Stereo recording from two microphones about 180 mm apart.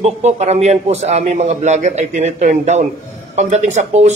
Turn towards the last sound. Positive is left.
turn(degrees=-40)  # may be behind; listen again after turning